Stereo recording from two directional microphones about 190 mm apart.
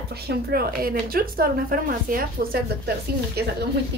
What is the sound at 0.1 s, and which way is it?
A woman's voice, 55° right (ahead or behind).